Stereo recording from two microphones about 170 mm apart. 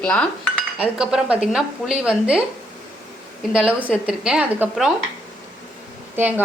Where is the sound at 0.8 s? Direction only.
5° right (ahead or behind).